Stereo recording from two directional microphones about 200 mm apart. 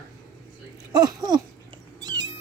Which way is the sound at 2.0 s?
20° right (ahead or behind).